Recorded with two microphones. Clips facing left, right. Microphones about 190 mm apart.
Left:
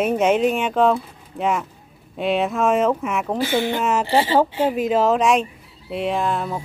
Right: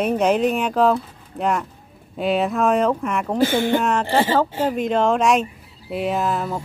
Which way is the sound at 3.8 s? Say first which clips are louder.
Even; 5° left (ahead or behind).